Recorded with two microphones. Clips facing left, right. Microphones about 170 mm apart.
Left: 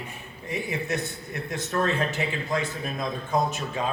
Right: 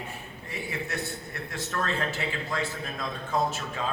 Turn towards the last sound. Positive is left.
turn(degrees=15)  # may be behind; listen again after turning